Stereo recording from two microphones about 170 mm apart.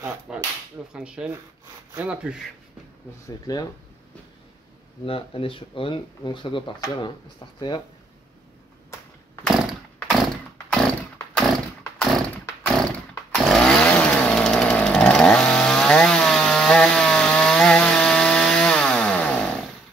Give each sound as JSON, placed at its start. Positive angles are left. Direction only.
{"t": 0.3, "sound": "speech", "side_deg": -5}
{"t": 3.3, "sound": "speech", "side_deg": 20}
{"t": 5.0, "sound": "speech", "side_deg": 35}
{"t": 9.7, "sound": "chainsaw", "side_deg": 0}
{"t": 12.6, "sound": "chainsaw", "side_deg": 5}